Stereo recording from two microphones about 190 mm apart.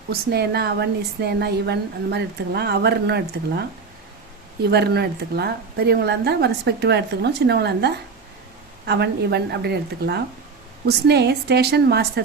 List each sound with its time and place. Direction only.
0.1 s a woman's voice: 55° right (ahead or behind)
4.6 s a woman's voice: 60° right (ahead or behind)